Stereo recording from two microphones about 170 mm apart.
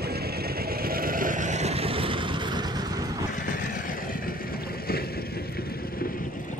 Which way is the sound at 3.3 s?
55° left (ahead or behind).